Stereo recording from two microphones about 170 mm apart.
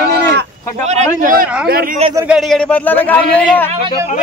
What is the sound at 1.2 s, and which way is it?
Speech, 55° right (ahead or behind).